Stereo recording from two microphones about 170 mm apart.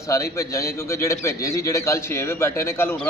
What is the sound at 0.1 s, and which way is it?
A man's voice, 20° left (ahead or behind).